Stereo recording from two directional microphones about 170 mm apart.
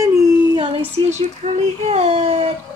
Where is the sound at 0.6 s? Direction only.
35° right (ahead or behind).